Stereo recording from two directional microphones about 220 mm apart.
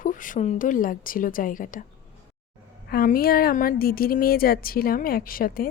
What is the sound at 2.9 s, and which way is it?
Speech, 40° left (ahead or behind).